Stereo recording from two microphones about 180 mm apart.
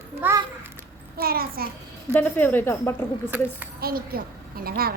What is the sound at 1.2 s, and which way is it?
Speech, 55° right (ahead or behind).